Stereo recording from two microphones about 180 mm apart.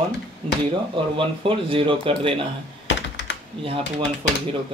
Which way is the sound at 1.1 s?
30° right (ahead or behind).